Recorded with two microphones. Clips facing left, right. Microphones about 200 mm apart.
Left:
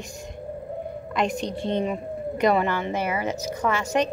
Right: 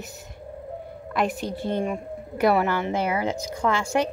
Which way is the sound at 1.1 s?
20° left (ahead or behind).